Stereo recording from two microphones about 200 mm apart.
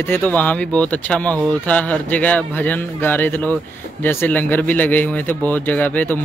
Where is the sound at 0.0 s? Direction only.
10° left (ahead or behind).